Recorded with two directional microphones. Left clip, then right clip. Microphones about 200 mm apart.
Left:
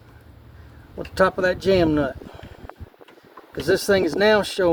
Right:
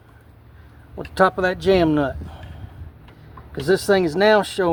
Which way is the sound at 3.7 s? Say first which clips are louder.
Right 1 dB; 35° right (ahead or behind).